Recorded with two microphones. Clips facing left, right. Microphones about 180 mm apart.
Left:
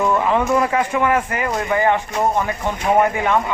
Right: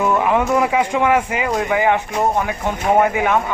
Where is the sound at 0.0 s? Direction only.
10° right (ahead or behind).